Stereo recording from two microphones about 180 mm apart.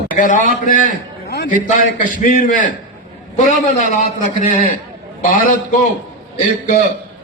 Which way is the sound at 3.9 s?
40° left (ahead or behind).